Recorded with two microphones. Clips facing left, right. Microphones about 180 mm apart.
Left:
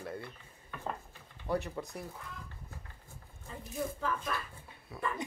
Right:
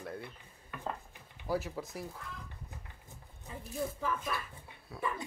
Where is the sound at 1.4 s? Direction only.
5° right (ahead or behind).